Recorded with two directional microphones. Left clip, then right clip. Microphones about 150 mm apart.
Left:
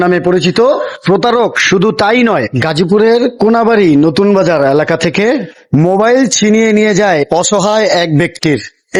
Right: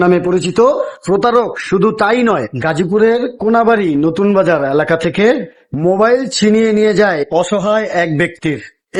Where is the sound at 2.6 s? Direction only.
55° left (ahead or behind).